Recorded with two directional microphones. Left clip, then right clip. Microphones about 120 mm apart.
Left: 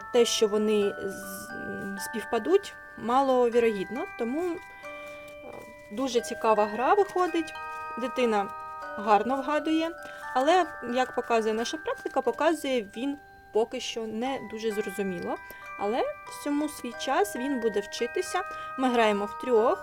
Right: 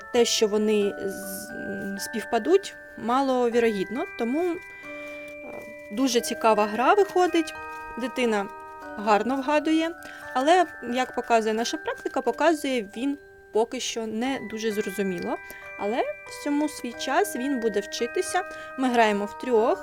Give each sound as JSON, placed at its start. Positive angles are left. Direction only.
{"t": 0.1, "sound": "speech", "side_deg": -35}
{"t": 5.9, "sound": "speech", "side_deg": -60}
{"t": 7.9, "sound": "speech", "side_deg": -40}
{"t": 13.5, "sound": "speech", "side_deg": -55}
{"t": 15.8, "sound": "speech", "side_deg": -35}